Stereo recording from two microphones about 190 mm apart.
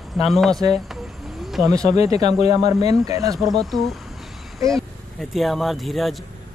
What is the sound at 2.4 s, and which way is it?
Speech, 35° left (ahead or behind).